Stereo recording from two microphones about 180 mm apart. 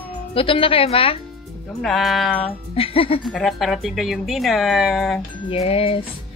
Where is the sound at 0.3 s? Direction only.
30° left (ahead or behind).